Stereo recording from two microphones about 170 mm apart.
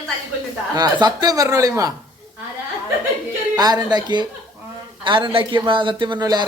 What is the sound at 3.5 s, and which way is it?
Speech, 25° right (ahead or behind).